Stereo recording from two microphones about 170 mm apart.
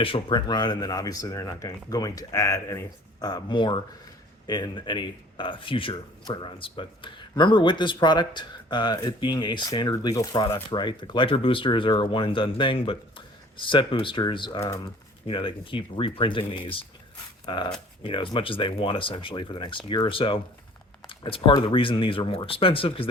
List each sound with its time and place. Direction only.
0.0 s speech: 30° left (ahead or behind)